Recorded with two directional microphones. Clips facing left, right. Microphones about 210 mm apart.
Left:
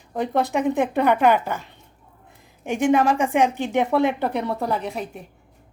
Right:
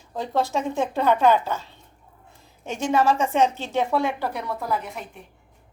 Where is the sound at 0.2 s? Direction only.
20° left (ahead or behind).